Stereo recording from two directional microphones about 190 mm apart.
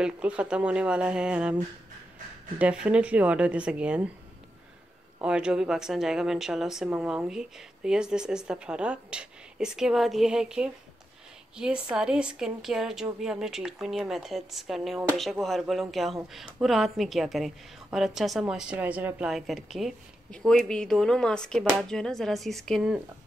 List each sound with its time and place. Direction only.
0.0 s speech: 5° right (ahead or behind)
2.6 s speech: 5° right (ahead or behind)
5.2 s speech: 5° right (ahead or behind)